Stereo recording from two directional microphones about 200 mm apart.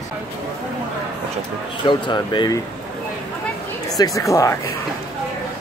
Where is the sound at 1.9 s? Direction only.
25° left (ahead or behind).